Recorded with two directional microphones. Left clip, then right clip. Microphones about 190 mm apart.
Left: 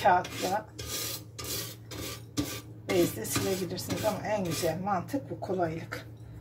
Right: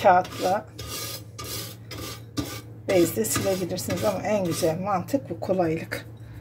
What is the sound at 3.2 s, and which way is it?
Music, 55° right (ahead or behind).